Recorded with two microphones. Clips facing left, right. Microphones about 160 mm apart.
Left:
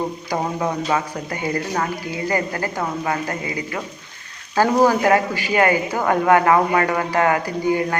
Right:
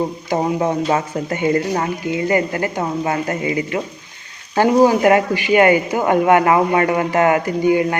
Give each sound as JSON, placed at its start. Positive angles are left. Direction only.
{"t": 0.3, "sound": "speech", "side_deg": -30}